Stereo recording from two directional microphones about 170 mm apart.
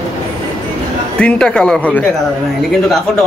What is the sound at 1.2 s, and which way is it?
Speech, 5° left (ahead or behind).